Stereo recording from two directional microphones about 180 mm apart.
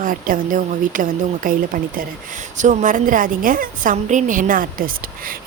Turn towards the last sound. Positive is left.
turn(degrees=-50)  # may be behind; listen again after turning